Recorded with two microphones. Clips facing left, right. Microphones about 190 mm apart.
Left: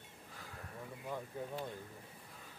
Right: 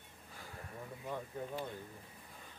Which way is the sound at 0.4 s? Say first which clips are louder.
Right 1 dB; centre (ahead or behind).